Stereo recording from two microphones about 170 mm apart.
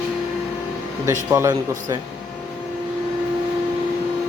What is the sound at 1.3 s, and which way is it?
Speech, 20° right (ahead or behind).